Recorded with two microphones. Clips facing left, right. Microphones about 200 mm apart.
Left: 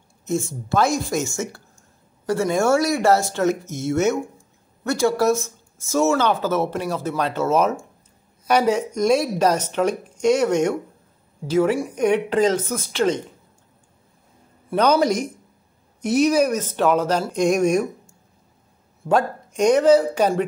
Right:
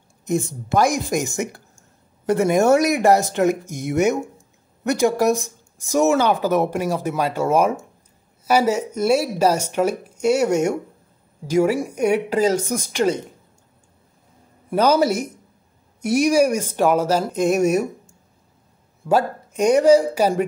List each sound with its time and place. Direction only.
0.2 s speech: 15° right (ahead or behind)
14.7 s speech: 5° right (ahead or behind)
19.0 s speech: 10° right (ahead or behind)